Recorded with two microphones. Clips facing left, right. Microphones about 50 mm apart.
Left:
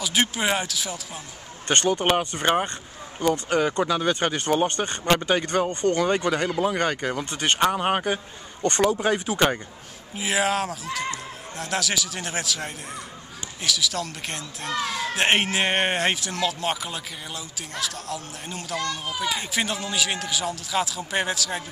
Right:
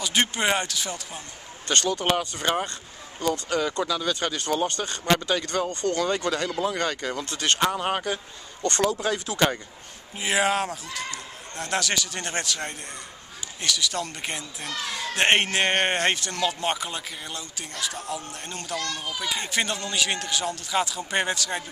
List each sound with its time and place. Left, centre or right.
0.0 s speech: centre
1.7 s speech: left
10.1 s speech: centre